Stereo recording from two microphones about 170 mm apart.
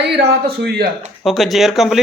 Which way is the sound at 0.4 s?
65° right (ahead or behind).